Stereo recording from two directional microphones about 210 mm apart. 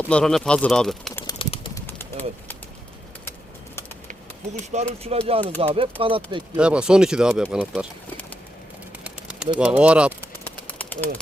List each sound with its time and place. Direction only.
0.1 s speech: 5° left (ahead or behind)
1.3 s bird: 25° left (ahead or behind)
4.7 s speech: 30° right (ahead or behind)
6.6 s speech: 5° right (ahead or behind)
10.4 s bird: 10° left (ahead or behind)